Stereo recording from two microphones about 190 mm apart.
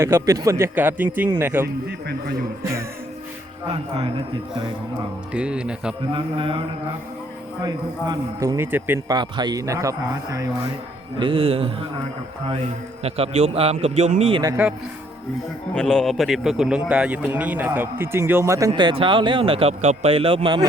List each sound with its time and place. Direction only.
0.0 s a man's voice: 15° right (ahead or behind)
1.6 s a man's voice: 60° right (ahead or behind)
3.7 s a man's voice: 30° right (ahead or behind)
5.3 s speech: 5° right (ahead or behind)
6.1 s speech: 25° right (ahead or behind)
7.6 s speech: 20° right (ahead or behind)
9.1 s a man's voice: 25° right (ahead or behind)
11.2 s speech: 30° right (ahead or behind)
13.0 s a man's voice: 35° right (ahead or behind)
14.4 s a man's voice: 10° right (ahead or behind)
15.7 s a man's voice: 5° left (ahead or behind); by 18.7 s 15° right (ahead or behind)
18.7 s speech: 25° right (ahead or behind)